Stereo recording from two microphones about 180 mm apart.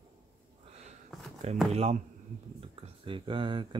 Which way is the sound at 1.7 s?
35° right (ahead or behind).